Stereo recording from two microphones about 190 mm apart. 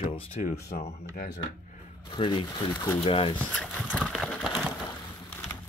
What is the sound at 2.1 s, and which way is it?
Speech, 25° left (ahead or behind).